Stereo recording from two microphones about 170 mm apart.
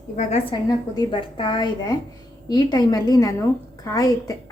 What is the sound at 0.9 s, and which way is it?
A woman's voice, 30° left (ahead or behind).